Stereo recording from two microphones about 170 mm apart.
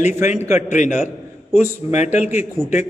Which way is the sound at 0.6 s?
45° left (ahead or behind).